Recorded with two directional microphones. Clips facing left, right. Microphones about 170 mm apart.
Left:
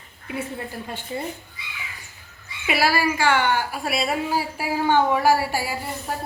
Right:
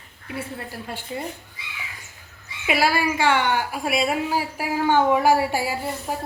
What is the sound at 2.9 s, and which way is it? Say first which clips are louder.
A woman's voice: even; 20° right (ahead or behind).